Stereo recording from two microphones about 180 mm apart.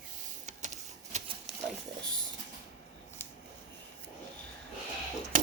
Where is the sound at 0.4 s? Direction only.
40° right (ahead or behind).